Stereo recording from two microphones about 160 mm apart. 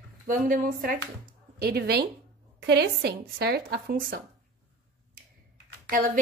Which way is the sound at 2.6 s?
90° right.